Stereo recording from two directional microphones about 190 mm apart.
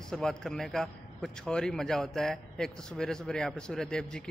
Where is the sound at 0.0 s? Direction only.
5° left (ahead or behind).